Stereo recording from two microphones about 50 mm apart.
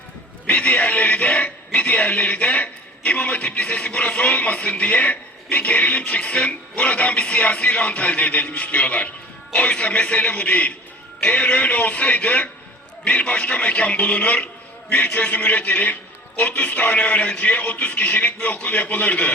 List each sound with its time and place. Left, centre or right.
0.4 s speech: left